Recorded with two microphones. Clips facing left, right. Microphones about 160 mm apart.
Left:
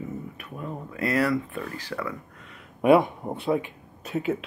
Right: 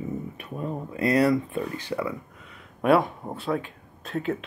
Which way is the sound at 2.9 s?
15° left (ahead or behind).